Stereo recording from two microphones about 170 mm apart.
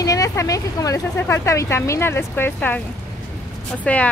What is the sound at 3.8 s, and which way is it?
Speech, 5° left (ahead or behind).